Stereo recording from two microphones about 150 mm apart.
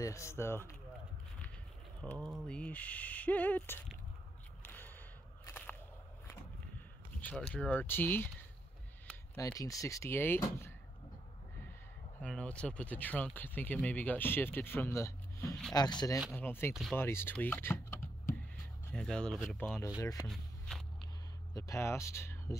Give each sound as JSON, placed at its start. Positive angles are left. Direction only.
{"t": 0.0, "sound": "speech", "side_deg": 20}
{"t": 2.0, "sound": "speech", "side_deg": 0}
{"t": 2.4, "sound": "speech", "side_deg": 10}
{"t": 4.6, "sound": "a sound", "side_deg": 15}
{"t": 5.4, "sound": "whip", "side_deg": 10}
{"t": 7.2, "sound": "speech", "side_deg": 10}
{"t": 12.2, "sound": "speech", "side_deg": 10}
{"t": 16.3, "sound": "speech", "side_deg": 15}
{"t": 18.9, "sound": "speech", "side_deg": 5}
{"t": 20.2, "sound": "walk", "side_deg": 0}
{"t": 21.5, "sound": "speech", "side_deg": 20}